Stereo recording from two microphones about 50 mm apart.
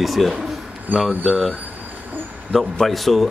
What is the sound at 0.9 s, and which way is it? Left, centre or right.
Speech, right.